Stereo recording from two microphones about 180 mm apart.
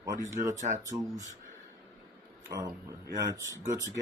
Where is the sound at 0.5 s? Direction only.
40° right (ahead or behind).